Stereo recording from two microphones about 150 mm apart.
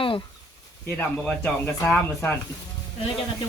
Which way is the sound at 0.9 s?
10° left (ahead or behind).